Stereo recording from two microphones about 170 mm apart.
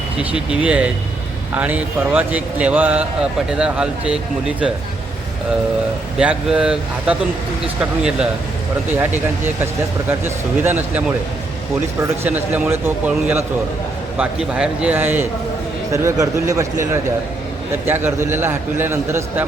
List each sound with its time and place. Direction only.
0.2 s a man's voice: 5° right (ahead or behind)
6.1 s a man's voice: 5° right (ahead or behind)
12.2 s a man's voice: 10° right (ahead or behind)